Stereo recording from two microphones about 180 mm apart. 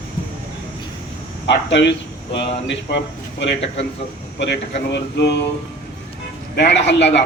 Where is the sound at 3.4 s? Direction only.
80° left.